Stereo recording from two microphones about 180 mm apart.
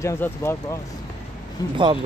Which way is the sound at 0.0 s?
15° left (ahead or behind).